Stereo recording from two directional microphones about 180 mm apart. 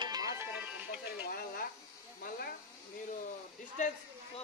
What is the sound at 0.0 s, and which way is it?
Music, 20° right (ahead or behind).